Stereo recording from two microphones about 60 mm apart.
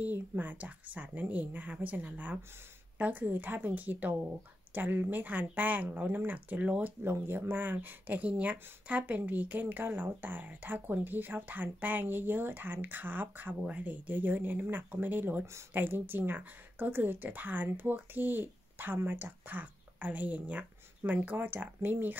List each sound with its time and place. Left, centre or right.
0.0 s speech: right
7.1 s speech: right
13.6 s speech: right